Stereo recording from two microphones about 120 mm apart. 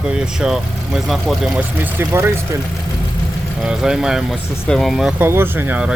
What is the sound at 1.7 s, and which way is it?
Speech, 20° right (ahead or behind).